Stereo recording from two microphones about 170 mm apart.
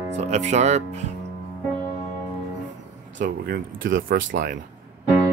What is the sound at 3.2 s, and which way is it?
Speech, 55° right (ahead or behind).